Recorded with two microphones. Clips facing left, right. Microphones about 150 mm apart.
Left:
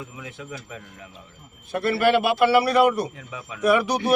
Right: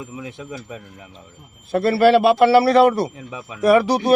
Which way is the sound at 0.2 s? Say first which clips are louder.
Right 5 dB; 25° right (ahead or behind).